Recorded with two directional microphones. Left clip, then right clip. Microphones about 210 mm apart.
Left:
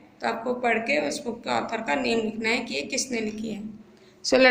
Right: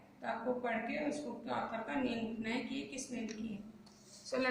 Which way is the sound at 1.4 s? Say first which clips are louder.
Left 14 dB; 50° left (ahead or behind).